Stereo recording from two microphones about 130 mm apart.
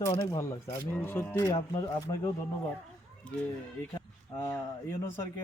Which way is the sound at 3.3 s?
10° left (ahead or behind).